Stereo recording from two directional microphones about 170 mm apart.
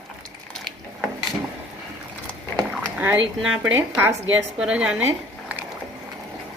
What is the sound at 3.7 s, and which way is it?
A woman's voice, 15° right (ahead or behind).